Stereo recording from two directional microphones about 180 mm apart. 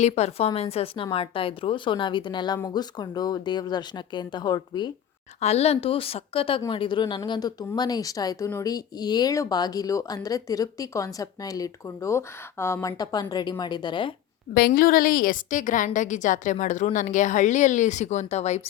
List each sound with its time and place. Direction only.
0.0 s a woman's voice: 35° left (ahead or behind)
5.4 s a woman's voice: 35° left (ahead or behind)
14.5 s a woman's voice: 55° left (ahead or behind); by 18.6 s 40° left (ahead or behind)